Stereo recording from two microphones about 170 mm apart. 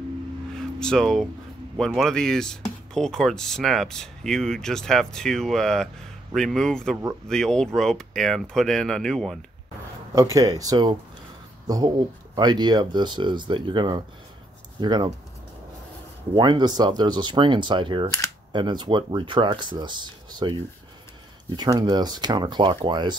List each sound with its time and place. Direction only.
0.7 s speech: 5° left (ahead or behind)
10.1 s speech: 20° right (ahead or behind)
16.3 s speech: 25° right (ahead or behind)